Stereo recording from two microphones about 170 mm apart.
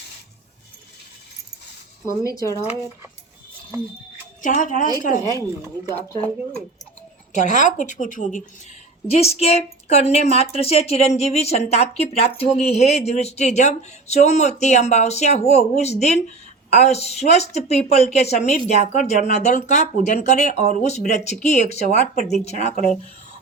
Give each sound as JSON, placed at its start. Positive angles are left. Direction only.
{"t": 2.0, "sound": "speech", "side_deg": 20}
{"t": 4.4, "sound": "a woman's voice", "side_deg": 50}
{"t": 5.9, "sound": "speech", "side_deg": 10}
{"t": 7.3, "sound": "a woman's voice", "side_deg": 45}
{"t": 9.0, "sound": "a woman's voice", "side_deg": 35}